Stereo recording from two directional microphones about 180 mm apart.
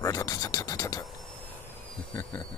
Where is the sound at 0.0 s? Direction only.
20° left (ahead or behind).